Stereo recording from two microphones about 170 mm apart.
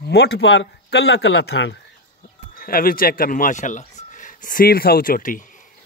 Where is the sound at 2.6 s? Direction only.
60° left (ahead or behind).